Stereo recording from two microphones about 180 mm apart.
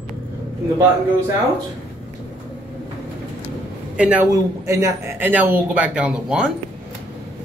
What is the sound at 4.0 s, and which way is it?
A man's voice, 5° right (ahead or behind).